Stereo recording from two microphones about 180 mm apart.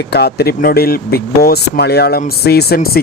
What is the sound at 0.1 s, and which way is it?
Speech, 60° left (ahead or behind).